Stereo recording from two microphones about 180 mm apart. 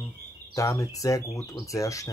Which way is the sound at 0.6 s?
20° left (ahead or behind).